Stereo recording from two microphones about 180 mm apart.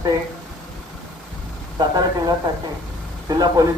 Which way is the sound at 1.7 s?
20° right (ahead or behind).